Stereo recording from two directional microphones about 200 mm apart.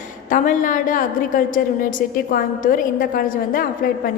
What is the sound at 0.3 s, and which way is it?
A woman's voice, 40° left (ahead or behind).